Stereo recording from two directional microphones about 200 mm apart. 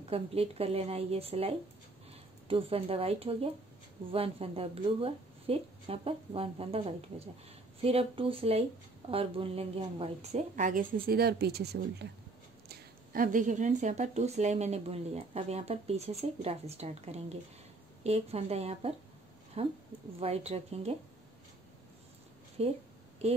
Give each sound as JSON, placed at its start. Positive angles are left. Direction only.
{"t": 0.1, "sound": "a woman's voice", "side_deg": -30}
{"t": 12.6, "sound": "speech", "side_deg": -45}
{"t": 22.6, "sound": "speech", "side_deg": -30}